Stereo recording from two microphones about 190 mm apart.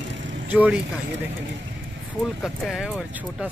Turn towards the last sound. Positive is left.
turn(degrees=-5)  # may be behind; listen again after turning